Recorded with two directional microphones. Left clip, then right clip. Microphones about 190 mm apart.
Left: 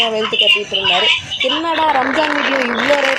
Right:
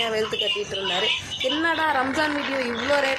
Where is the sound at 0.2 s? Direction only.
45° left (ahead or behind).